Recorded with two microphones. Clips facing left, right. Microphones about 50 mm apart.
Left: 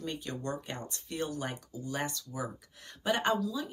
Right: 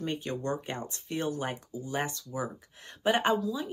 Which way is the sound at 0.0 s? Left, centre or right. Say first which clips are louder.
Right 4 dB; right.